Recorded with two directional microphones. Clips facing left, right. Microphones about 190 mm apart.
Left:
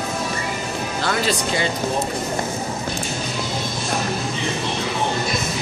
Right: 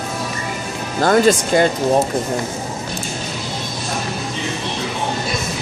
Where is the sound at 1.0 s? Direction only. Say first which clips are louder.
Right 11 dB; 45° right (ahead or behind).